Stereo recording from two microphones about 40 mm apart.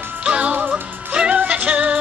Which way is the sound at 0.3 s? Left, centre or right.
Right.